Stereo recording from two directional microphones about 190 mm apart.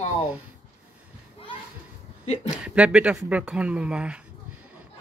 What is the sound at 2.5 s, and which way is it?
Speech, 5° right (ahead or behind).